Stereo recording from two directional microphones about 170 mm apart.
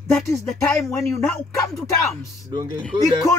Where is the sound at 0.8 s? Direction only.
15° left (ahead or behind).